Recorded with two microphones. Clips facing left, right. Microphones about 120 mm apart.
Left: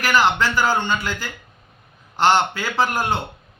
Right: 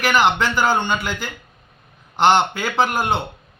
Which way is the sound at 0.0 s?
20° right (ahead or behind).